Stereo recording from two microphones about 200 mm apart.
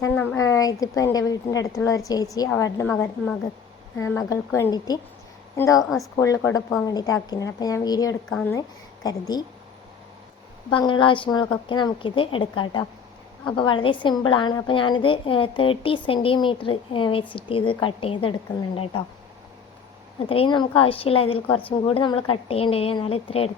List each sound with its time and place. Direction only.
0.0 s a woman's voice: 10° left (ahead or behind)
3.9 s a woman's voice: 15° left (ahead or behind)
8.3 s speech: 5° left (ahead or behind)
9.0 s a woman's voice: 20° left (ahead or behind)
10.7 s a woman's voice: 25° left (ahead or behind)
20.2 s a woman's voice: 25° left (ahead or behind)